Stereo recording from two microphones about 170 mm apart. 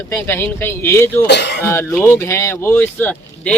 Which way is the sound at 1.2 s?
90° left.